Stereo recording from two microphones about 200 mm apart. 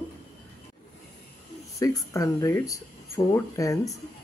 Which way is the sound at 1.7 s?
15° left (ahead or behind).